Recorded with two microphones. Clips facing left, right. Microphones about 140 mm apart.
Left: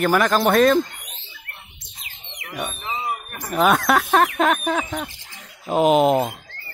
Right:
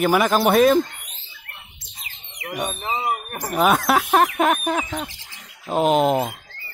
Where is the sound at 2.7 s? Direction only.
30° right (ahead or behind).